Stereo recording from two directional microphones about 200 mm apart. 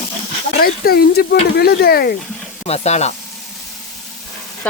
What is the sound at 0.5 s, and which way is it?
Speech, 50° left (ahead or behind).